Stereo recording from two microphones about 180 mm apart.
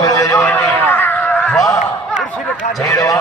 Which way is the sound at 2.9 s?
15° left (ahead or behind).